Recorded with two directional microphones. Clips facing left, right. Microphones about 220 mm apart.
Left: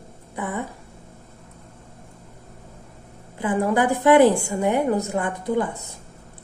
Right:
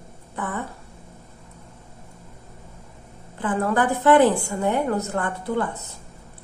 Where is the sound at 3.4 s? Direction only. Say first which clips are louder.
Left 2 dB; 15° left (ahead or behind).